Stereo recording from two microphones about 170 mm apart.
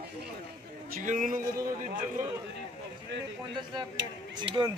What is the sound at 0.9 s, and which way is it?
Speech, 50° right (ahead or behind).